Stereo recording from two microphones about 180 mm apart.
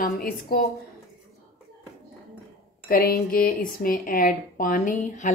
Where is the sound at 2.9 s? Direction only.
55° left (ahead or behind).